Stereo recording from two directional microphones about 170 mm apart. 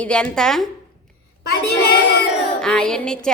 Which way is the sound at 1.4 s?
65° left (ahead or behind).